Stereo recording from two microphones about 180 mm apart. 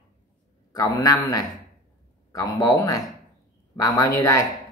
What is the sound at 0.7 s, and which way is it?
Speech, 20° left (ahead or behind).